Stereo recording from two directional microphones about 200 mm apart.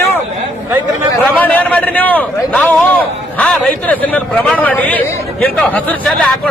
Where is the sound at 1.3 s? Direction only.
10° left (ahead or behind).